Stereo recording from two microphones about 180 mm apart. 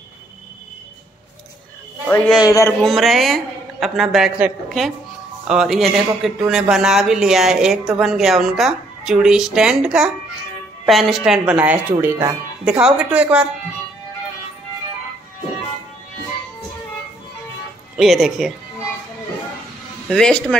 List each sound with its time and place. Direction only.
2.0 s a man's voice: 10° left (ahead or behind)
2.8 s speech: centre (ahead or behind)
17.9 s speech: centre (ahead or behind)
20.1 s speech: 5° left (ahead or behind)